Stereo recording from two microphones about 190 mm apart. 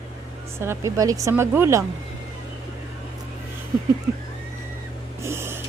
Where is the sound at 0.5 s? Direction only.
15° right (ahead or behind).